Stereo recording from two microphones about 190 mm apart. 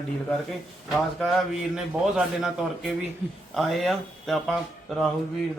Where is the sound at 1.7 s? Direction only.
5° right (ahead or behind).